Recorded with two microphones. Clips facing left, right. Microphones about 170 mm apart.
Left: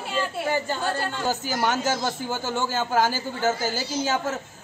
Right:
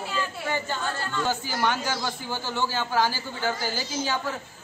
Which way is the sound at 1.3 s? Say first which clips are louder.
Left 2 dB; 45° left (ahead or behind).